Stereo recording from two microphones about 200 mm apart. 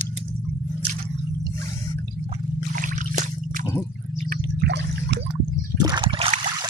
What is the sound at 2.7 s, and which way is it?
Trickle, 40° right (ahead or behind).